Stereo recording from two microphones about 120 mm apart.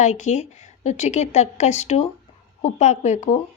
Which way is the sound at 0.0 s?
80° left.